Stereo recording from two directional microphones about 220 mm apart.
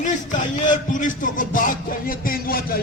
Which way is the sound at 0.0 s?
35° left (ahead or behind).